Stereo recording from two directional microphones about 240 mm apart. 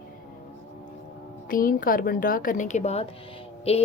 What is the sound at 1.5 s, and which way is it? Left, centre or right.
A woman's voice, left.